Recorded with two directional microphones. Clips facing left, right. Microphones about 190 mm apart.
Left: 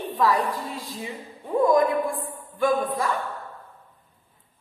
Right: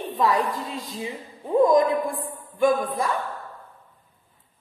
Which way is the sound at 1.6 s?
20° right (ahead or behind).